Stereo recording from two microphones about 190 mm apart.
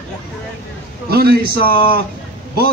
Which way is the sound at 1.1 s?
55° right (ahead or behind).